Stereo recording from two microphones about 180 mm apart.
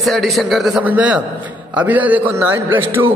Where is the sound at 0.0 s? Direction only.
Centre (ahead or behind).